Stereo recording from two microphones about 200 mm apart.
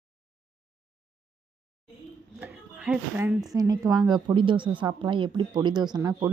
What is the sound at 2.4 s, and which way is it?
A woman's voice, 5° right (ahead or behind).